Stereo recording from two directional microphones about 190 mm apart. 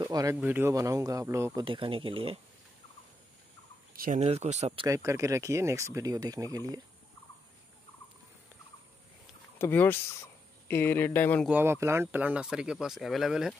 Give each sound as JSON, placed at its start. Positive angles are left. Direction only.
{"t": 0.0, "sound": "speech", "side_deg": -15}
{"t": 1.6, "sound": "speech", "side_deg": -25}
{"t": 3.9, "sound": "speech", "side_deg": -45}
{"t": 4.8, "sound": "speech", "side_deg": -15}
{"t": 9.6, "sound": "speech", "side_deg": 10}
{"t": 11.4, "sound": "speech", "side_deg": -10}